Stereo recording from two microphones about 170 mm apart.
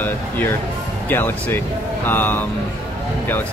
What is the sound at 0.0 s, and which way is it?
Speech, 10° left (ahead or behind).